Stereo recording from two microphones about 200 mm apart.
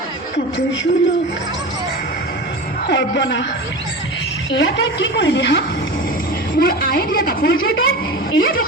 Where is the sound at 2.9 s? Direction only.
60° left (ahead or behind).